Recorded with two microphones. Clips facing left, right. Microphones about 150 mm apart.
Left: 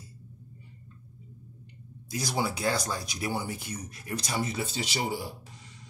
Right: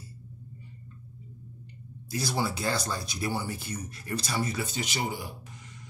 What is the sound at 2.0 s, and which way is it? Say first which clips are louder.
Speech: even; 15° left (ahead or behind).